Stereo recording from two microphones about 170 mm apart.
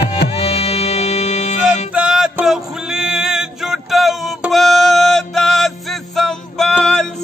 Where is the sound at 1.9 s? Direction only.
5° right (ahead or behind).